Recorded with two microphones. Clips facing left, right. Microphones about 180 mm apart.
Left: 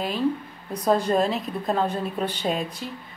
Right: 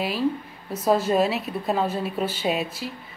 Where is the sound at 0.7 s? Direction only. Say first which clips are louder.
Right 1 dB; 5° right (ahead or behind).